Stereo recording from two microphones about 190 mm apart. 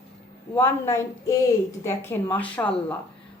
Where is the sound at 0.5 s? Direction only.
10° left (ahead or behind).